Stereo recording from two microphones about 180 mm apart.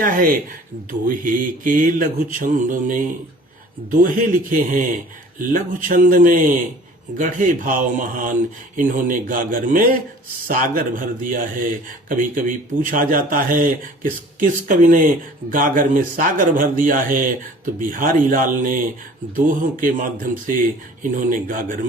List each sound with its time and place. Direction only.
0.0 s speech: 50° right (ahead or behind)